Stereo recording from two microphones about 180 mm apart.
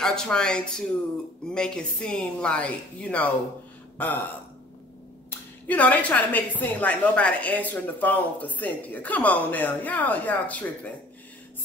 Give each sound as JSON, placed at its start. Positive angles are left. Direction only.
{"t": 0.0, "sound": "a woman's voice", "side_deg": 5}
{"t": 5.3, "sound": "a woman's voice", "side_deg": 10}